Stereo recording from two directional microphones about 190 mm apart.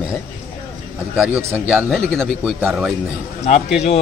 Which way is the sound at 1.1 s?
10° right (ahead or behind).